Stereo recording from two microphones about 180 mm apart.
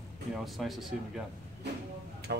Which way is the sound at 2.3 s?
60° right (ahead or behind).